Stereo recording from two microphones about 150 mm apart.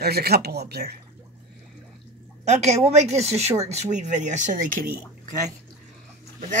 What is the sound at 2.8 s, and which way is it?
Speech, 45° right (ahead or behind).